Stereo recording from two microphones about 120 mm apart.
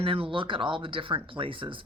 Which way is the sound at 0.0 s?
50° right (ahead or behind).